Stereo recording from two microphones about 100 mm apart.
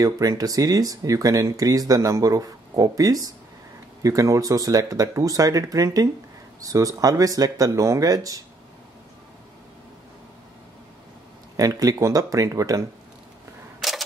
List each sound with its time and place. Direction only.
0.0 s speech: 35° right (ahead or behind)
11.5 s speech: 35° right (ahead or behind)
13.7 s single-lens reflex camera: centre (ahead or behind)